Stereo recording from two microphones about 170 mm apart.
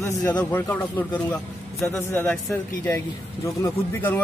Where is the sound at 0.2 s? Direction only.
25° left (ahead or behind).